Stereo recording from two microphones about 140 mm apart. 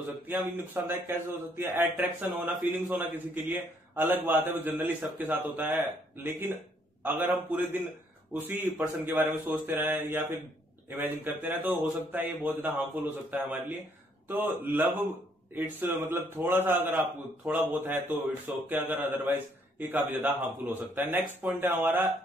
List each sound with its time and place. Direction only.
0.3 s a man's voice: 15° right (ahead or behind)
7.0 s a man's voice: 15° right (ahead or behind)